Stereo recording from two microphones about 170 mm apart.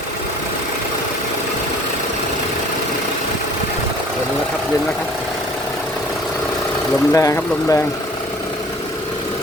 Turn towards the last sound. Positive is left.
turn(degrees=20)  # may be behind; listen again after turning